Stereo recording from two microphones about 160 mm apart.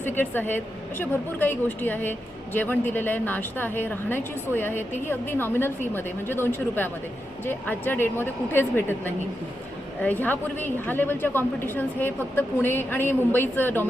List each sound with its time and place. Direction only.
0.0 s a woman's voice: 10° left (ahead or behind)